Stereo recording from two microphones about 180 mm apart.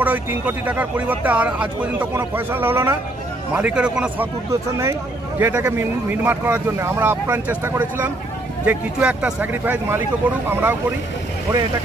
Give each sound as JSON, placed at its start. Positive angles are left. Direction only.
{"t": 0.0, "sound": "speech", "side_deg": -10}
{"t": 4.5, "sound": "speech", "side_deg": -15}